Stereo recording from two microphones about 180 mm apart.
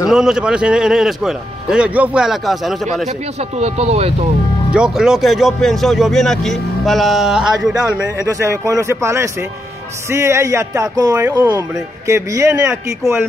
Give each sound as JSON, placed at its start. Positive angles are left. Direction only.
{"t": 0.1, "sound": "speech", "side_deg": -5}
{"t": 3.1, "sound": "speech", "side_deg": -35}
{"t": 4.7, "sound": "speech", "side_deg": -5}
{"t": 8.3, "sound": "speech", "side_deg": -15}